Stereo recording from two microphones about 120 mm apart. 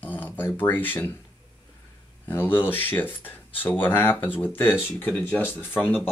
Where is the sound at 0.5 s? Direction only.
15° left (ahead or behind).